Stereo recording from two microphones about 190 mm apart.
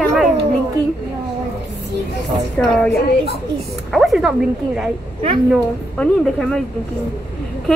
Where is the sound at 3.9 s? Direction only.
Centre (ahead or behind).